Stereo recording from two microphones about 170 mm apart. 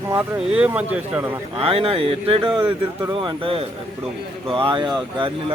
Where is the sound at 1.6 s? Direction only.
35° right (ahead or behind).